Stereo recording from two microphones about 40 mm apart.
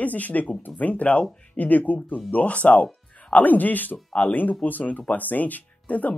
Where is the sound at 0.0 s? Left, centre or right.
Left.